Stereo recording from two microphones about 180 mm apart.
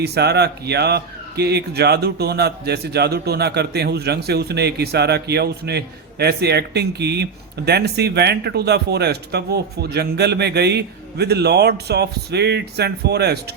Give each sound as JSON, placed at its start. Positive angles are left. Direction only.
{"t": 0.0, "sound": "speech", "side_deg": -65}